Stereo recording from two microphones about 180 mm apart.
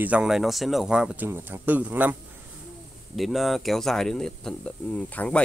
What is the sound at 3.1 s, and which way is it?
Speech, centre (ahead or behind).